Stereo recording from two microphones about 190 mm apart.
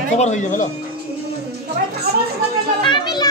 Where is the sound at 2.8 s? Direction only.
25° left (ahead or behind).